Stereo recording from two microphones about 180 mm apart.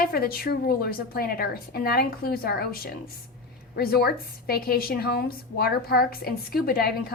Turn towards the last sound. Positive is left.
turn(degrees=55)  # may be behind; listen again after turning